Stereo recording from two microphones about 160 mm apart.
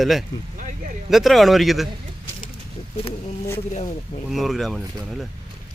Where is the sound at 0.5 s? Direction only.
55° right (ahead or behind).